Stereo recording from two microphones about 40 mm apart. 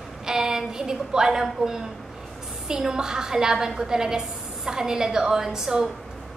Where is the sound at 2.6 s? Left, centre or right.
Centre.